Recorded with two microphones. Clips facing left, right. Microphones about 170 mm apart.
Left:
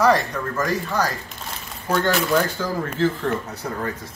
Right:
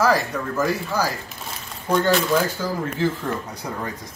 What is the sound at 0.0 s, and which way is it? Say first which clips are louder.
Speech: left 2 dB; 5° right (ahead or behind).